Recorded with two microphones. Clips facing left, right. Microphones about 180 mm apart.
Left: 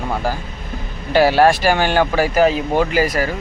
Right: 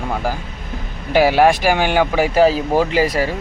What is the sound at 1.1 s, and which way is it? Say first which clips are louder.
Speech: even; 15° right (ahead or behind).